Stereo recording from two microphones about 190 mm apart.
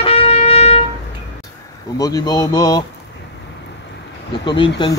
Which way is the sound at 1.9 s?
20° left (ahead or behind).